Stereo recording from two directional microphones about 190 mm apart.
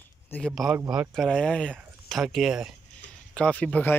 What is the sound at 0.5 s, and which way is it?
Speech, 5° right (ahead or behind).